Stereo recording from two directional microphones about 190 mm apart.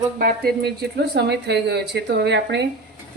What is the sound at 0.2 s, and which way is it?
Speech, 50° right (ahead or behind).